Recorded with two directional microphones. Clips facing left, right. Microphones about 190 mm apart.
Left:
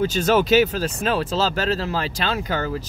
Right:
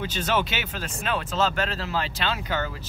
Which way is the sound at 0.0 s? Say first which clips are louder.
Left 8 dB; 40° left (ahead or behind).